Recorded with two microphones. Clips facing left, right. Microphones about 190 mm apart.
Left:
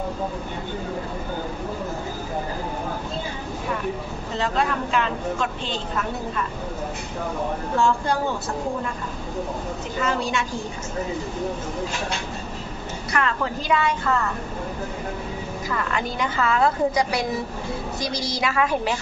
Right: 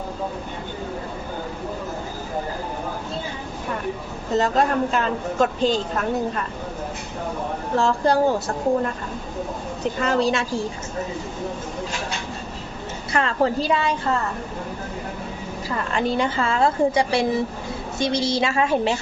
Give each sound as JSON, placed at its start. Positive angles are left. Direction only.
{"t": 4.4, "sound": "speech", "side_deg": -40}
{"t": 7.8, "sound": "speech", "side_deg": -35}
{"t": 10.0, "sound": "speech", "side_deg": -35}
{"t": 13.1, "sound": "speech", "side_deg": -30}
{"t": 15.7, "sound": "a woman's voice", "side_deg": -30}